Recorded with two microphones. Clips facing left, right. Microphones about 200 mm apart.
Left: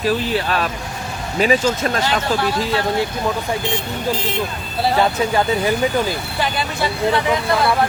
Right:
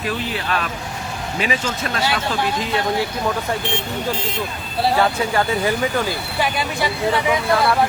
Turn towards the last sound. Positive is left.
turn(degrees=-10)  # may be behind; listen again after turning